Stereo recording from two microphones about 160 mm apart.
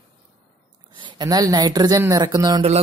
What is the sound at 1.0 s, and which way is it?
Speech, 30° right (ahead or behind).